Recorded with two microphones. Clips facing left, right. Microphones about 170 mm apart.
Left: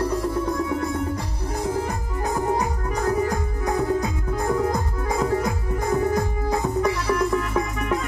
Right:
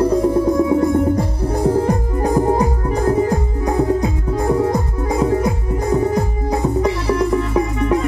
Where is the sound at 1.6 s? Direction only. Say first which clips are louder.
Right 10 dB; 35° right (ahead or behind).